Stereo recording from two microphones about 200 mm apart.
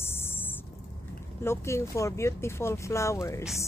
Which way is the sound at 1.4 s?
15° left (ahead or behind).